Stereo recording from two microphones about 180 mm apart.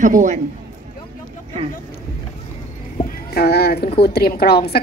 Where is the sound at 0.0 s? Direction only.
45° right (ahead or behind).